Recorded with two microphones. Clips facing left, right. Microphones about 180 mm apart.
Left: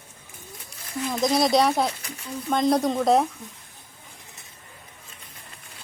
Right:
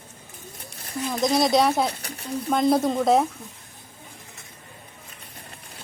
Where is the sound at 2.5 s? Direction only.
5° right (ahead or behind).